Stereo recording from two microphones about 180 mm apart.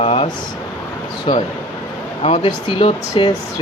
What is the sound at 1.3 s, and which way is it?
Speech, 30° left (ahead or behind).